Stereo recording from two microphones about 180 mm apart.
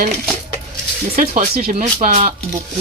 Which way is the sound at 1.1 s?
50° right (ahead or behind).